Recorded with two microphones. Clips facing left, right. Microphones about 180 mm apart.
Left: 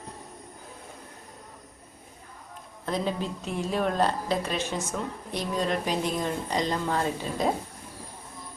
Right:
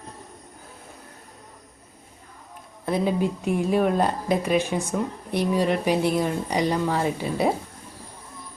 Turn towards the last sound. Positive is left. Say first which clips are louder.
# right 4 dB
turn(degrees=-10)  # may be behind; listen again after turning